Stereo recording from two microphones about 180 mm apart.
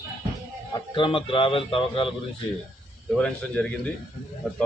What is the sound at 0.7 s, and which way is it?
A man's voice, 30° left (ahead or behind).